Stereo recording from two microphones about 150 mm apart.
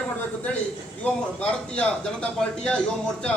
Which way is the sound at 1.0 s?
10° left (ahead or behind).